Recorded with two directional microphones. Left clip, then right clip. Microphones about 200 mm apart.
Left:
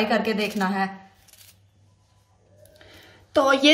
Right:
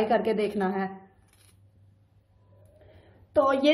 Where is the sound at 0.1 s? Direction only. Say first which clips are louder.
Left 1 dB; 25° right (ahead or behind).